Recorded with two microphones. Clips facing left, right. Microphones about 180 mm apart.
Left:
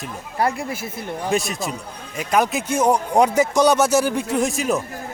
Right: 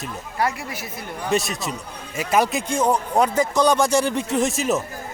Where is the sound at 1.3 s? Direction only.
Centre (ahead or behind).